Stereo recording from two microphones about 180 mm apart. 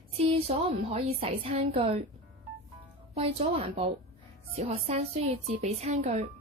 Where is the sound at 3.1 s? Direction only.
35° right (ahead or behind).